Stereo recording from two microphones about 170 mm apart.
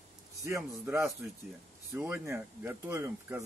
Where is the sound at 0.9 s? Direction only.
15° right (ahead or behind).